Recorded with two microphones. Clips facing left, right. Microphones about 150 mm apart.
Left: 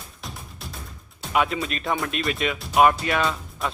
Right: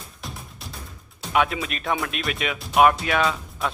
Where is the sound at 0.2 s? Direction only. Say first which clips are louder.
Even; centre (ahead or behind).